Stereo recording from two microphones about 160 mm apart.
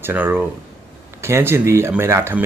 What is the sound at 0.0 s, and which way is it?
Speech, 15° right (ahead or behind).